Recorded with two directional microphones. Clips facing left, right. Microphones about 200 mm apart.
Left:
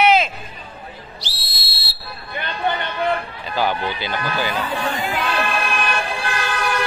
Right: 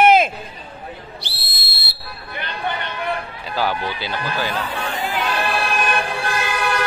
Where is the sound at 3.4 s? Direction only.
5° right (ahead or behind).